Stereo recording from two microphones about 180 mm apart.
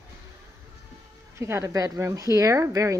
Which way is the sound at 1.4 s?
15° right (ahead or behind).